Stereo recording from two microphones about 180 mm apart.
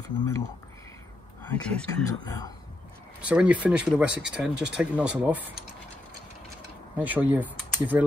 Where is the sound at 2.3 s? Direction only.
20° left (ahead or behind).